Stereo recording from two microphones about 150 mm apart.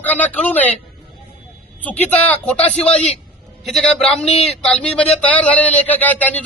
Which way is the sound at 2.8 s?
45° left (ahead or behind).